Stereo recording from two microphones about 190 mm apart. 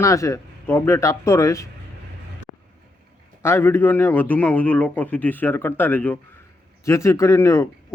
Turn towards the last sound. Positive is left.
turn(degrees=15)  # may be behind; listen again after turning